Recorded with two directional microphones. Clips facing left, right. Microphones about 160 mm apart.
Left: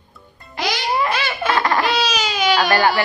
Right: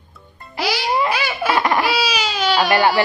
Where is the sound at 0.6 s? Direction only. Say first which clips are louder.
Right 1 dB; 5° right (ahead or behind).